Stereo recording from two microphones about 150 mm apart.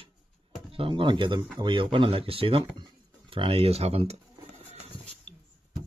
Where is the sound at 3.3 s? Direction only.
40° right (ahead or behind).